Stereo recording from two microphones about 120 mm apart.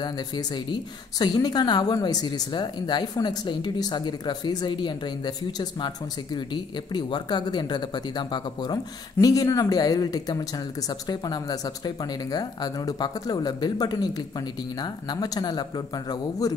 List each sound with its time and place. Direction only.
0.0 s speech: 35° left (ahead or behind)